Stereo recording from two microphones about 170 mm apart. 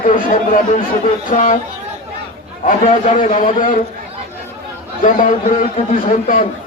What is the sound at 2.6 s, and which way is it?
Speech, 45° left (ahead or behind).